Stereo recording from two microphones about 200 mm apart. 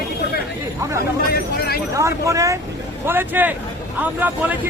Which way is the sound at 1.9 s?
15° right (ahead or behind).